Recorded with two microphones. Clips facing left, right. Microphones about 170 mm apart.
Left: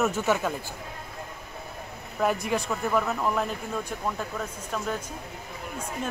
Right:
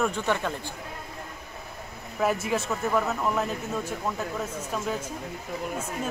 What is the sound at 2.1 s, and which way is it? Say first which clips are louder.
Speech: even; 5° right (ahead or behind).